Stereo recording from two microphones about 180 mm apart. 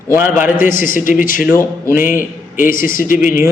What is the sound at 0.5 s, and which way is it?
A man's voice, 50° left (ahead or behind).